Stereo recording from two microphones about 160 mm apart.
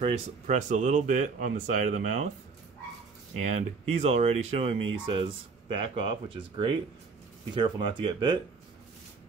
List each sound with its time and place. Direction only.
0.0 s speech: 50° right (ahead or behind)
3.3 s speech: 45° right (ahead or behind); by 8.4 s 30° right (ahead or behind)